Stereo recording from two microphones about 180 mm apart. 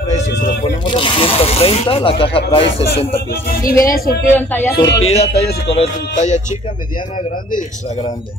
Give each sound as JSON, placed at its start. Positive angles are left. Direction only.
{"t": 0.8, "sound": "speech", "side_deg": 30}
{"t": 3.8, "sound": "speech", "side_deg": 55}
{"t": 4.4, "sound": "speech", "side_deg": 10}
{"t": 5.0, "sound": "speech", "side_deg": 35}